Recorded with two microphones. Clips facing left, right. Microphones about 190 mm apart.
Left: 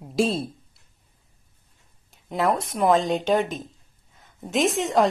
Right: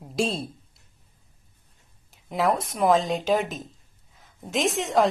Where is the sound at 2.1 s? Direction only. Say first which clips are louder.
Left 1 dB; centre (ahead or behind).